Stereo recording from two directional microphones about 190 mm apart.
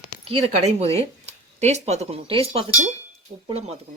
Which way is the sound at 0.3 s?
30° right (ahead or behind).